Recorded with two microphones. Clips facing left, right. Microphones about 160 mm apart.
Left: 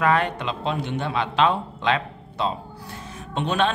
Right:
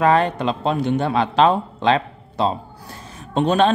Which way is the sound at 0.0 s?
35° right (ahead or behind).